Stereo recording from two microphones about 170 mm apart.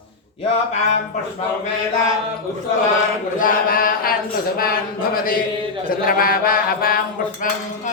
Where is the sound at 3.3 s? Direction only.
55° left (ahead or behind).